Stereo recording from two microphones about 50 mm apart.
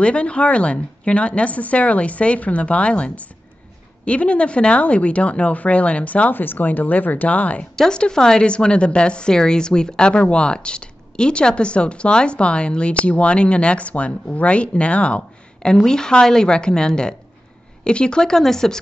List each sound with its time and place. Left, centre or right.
0.0 s a woman's voice: left
6.3 s speech: left
7.7 s a woman's voice: centre